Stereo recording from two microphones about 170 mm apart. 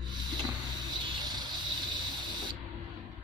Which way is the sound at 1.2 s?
25° right (ahead or behind).